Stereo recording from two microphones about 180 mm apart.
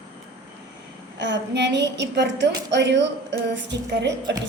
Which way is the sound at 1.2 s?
75° right (ahead or behind).